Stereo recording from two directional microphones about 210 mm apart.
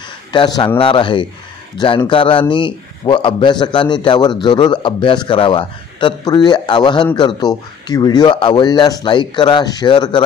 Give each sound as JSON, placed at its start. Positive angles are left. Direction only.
{"t": 0.3, "sound": "a man's voice", "side_deg": 20}